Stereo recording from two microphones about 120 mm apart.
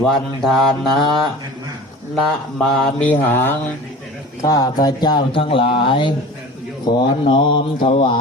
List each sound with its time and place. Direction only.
0.0 s mantra: centre (ahead or behind)
3.1 s speech: 15° left (ahead or behind)
4.4 s speech: 30° left (ahead or behind)